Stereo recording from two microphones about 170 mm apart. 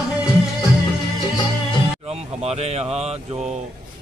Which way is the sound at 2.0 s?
40° right (ahead or behind).